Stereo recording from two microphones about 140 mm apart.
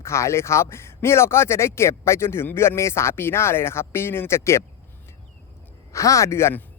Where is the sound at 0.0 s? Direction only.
20° left (ahead or behind).